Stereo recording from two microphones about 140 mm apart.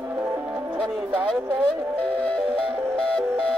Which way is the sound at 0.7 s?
5° right (ahead or behind).